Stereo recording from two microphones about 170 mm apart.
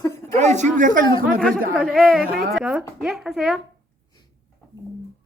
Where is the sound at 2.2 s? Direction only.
65° right (ahead or behind).